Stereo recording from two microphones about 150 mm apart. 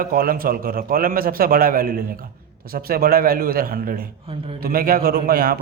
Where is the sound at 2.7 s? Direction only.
90° right.